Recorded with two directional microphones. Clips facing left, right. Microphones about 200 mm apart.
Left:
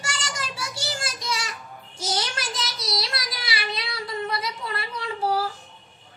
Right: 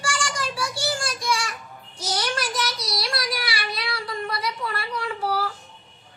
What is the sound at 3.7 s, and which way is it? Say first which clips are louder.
Child singing: right 1 dB; 25° left (ahead or behind).